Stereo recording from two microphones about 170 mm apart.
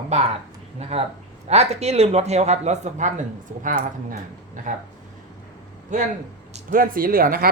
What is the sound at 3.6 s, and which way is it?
Speech, 55° right (ahead or behind).